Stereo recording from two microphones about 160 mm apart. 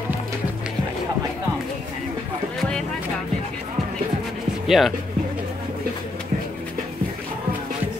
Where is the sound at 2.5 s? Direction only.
5° left (ahead or behind).